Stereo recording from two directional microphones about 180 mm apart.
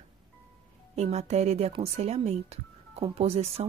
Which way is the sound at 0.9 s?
40° right (ahead or behind).